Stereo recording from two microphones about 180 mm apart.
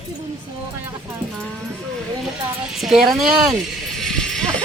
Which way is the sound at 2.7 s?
Centre (ahead or behind).